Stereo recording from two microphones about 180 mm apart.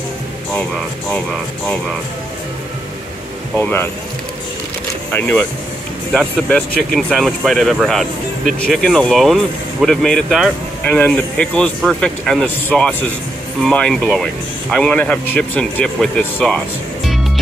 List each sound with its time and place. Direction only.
1.1 s speech: 5° left (ahead or behind)
3.5 s speech: 10° left (ahead or behind)
5.1 s speech: 10° left (ahead or behind)